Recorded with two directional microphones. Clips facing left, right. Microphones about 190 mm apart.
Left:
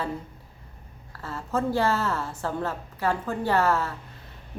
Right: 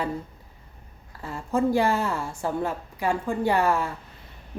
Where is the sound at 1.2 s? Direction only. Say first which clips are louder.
Right 3 dB; 15° right (ahead or behind).